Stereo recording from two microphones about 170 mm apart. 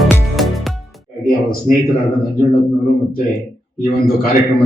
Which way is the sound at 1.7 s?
45° left (ahead or behind).